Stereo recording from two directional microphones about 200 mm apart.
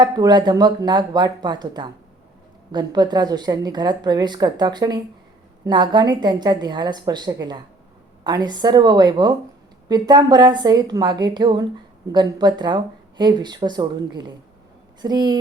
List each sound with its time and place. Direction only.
0.0 s a woman's voice: 20° right (ahead or behind)